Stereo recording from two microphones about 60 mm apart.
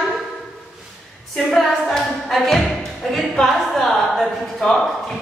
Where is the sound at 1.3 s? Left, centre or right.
Centre.